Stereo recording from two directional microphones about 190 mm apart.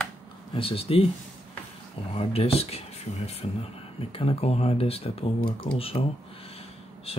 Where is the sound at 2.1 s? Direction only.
30° left (ahead or behind).